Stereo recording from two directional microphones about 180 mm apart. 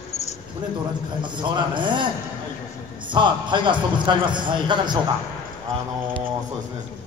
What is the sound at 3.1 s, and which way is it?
A man's voice, 25° right (ahead or behind).